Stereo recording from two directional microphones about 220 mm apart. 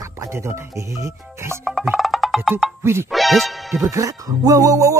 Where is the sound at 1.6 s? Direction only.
Centre (ahead or behind).